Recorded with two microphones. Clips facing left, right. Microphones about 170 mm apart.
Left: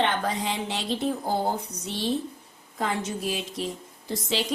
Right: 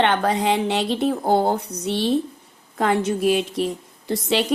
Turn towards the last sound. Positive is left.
turn(degrees=-65)  # may be behind; listen again after turning